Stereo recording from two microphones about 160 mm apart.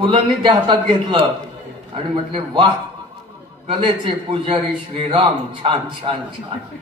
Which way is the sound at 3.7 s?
30° right (ahead or behind).